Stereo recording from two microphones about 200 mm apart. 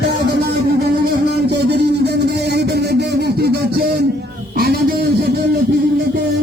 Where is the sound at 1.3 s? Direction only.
55° right (ahead or behind).